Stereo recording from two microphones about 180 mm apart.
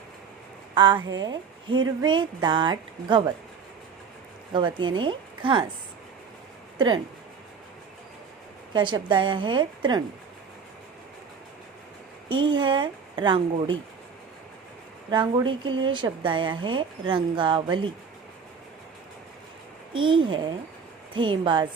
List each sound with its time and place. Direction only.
0.7 s a woman's voice: 25° right (ahead or behind)
4.5 s a woman's voice: 25° right (ahead or behind)
6.7 s speech: 25° right (ahead or behind)
8.7 s a woman's voice: 25° right (ahead or behind)
12.3 s a woman's voice: 25° right (ahead or behind)
15.1 s a woman's voice: 25° right (ahead or behind)
19.9 s a woman's voice: 25° right (ahead or behind)